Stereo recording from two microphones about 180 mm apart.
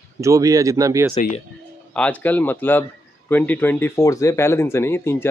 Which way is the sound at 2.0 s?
10° left (ahead or behind).